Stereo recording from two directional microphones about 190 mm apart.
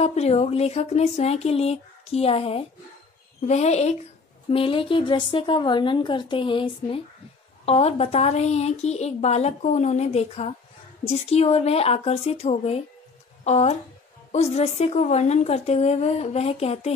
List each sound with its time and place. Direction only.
0.0 s a woman's voice: 35° left (ahead or behind)